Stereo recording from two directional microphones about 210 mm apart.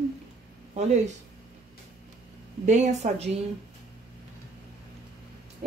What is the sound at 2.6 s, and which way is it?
Speech, 35° right (ahead or behind).